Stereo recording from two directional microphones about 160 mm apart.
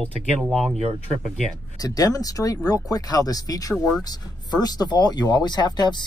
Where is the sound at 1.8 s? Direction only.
25° left (ahead or behind).